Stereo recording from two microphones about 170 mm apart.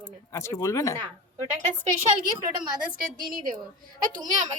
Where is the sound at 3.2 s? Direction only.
55° right (ahead or behind).